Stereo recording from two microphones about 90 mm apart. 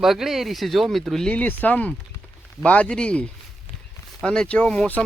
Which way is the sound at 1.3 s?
15° left (ahead or behind).